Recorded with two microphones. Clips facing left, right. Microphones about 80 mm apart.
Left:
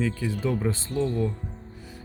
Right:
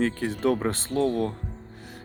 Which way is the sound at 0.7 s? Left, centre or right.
Right.